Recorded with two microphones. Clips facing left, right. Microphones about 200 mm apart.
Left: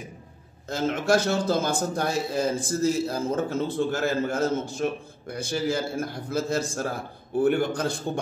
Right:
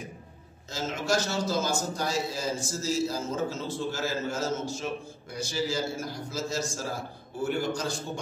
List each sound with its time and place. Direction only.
0.7 s a man's voice: 55° left (ahead or behind)